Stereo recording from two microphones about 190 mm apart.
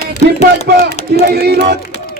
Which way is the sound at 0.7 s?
55° right (ahead or behind).